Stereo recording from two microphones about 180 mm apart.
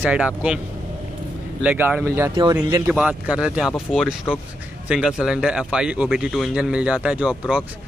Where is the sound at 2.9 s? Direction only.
5° right (ahead or behind).